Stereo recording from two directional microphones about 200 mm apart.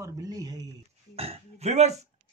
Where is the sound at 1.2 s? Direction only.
30° right (ahead or behind).